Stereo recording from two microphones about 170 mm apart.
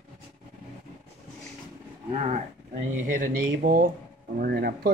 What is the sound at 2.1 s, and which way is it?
Speech, 35° right (ahead or behind).